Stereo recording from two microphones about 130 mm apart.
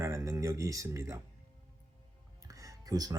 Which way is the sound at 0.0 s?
20° right (ahead or behind).